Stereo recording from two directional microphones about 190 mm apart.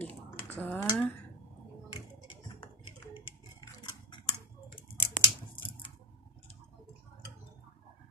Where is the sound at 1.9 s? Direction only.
25° left (ahead or behind).